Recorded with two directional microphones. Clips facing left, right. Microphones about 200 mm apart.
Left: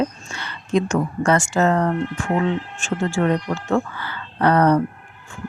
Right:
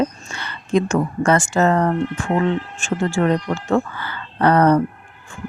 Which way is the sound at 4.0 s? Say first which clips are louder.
Right 2 dB; 50° right (ahead or behind).